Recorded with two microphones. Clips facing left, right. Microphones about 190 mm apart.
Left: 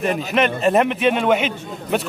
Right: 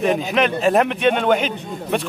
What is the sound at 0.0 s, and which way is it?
A man's voice, centre (ahead or behind).